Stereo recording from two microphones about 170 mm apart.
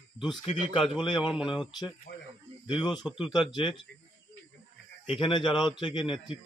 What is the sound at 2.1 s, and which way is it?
Speech, 70° left (ahead or behind).